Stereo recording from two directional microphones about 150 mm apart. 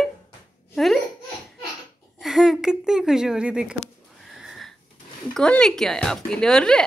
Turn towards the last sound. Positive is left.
turn(degrees=5)  # may be behind; listen again after turning